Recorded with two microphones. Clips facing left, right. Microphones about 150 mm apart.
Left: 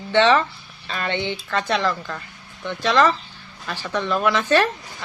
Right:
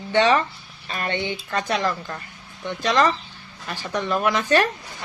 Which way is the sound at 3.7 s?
15° right (ahead or behind).